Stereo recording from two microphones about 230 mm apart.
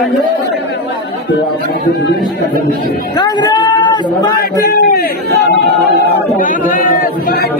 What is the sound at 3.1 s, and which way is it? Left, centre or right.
Speech, centre.